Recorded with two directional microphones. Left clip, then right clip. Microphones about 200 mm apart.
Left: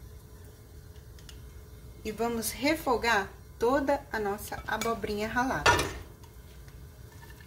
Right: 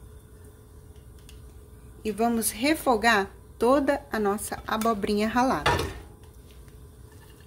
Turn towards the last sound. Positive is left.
turn(degrees=-50)  # may be behind; listen again after turning